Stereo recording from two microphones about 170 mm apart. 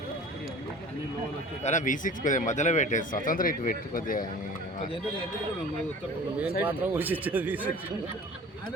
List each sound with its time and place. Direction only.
1.6 s speech: 50° left (ahead or behind)
6.6 s speech: 10° right (ahead or behind)